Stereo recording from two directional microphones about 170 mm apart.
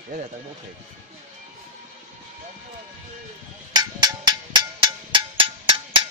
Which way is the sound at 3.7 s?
25° right (ahead or behind).